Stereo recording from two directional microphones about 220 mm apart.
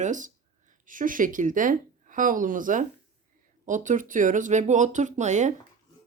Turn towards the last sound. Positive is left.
turn(degrees=-35)  # may be behind; listen again after turning